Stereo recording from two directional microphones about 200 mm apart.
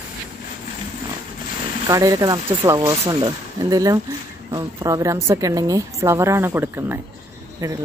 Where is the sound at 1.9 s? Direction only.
15° right (ahead or behind).